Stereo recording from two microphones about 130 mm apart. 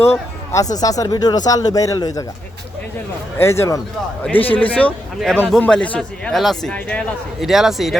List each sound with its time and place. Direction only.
0.1 s speech: 25° left (ahead or behind)
3.3 s a man's voice: 20° left (ahead or behind)
7.4 s a man's voice: centre (ahead or behind)